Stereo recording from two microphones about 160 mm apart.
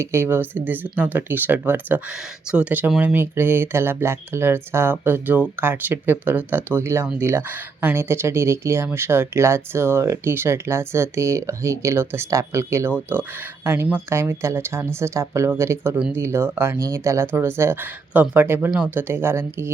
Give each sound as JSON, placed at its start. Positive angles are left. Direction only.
{"t": 0.0, "sound": "speech", "side_deg": -15}